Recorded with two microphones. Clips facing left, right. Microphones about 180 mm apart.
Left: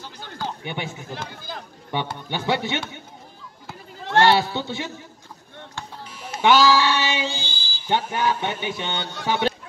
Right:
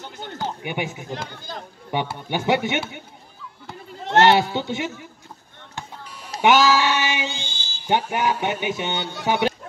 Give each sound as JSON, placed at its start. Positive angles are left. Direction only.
{"t": 0.0, "sound": "speech", "side_deg": -25}
{"t": 4.0, "sound": "speech", "side_deg": -20}
{"t": 6.4, "sound": "speech", "side_deg": -20}
{"t": 7.2, "sound": "music", "side_deg": 35}
{"t": 7.9, "sound": "speech", "side_deg": -15}